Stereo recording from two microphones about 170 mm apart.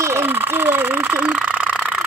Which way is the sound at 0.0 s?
15° right (ahead or behind).